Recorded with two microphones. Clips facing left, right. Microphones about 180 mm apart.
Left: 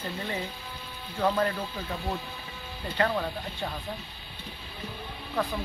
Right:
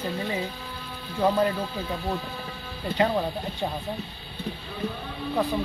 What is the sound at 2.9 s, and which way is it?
Speech, 20° right (ahead or behind).